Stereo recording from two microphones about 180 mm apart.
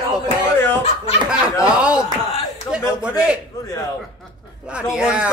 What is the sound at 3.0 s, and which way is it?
Speech, 5° right (ahead or behind).